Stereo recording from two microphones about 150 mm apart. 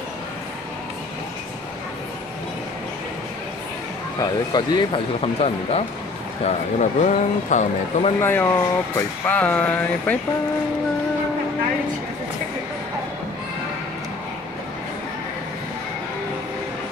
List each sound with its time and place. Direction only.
4.2 s speech: 30° left (ahead or behind); by 8.1 s 50° left (ahead or behind)
8.2 s speech: 15° left (ahead or behind)